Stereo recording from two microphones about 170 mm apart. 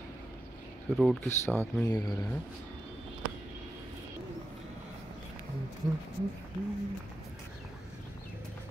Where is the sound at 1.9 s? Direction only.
25° left (ahead or behind).